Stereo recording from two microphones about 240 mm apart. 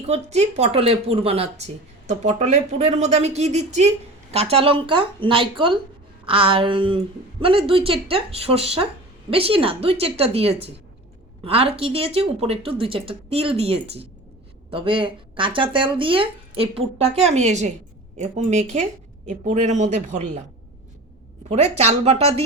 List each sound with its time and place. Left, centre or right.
0.0 s speech: right
21.5 s speech: right